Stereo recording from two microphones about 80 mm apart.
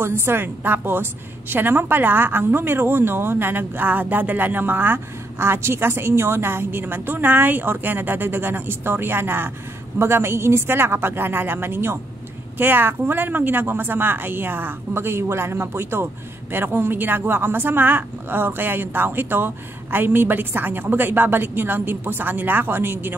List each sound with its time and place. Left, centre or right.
0.0 s speech: right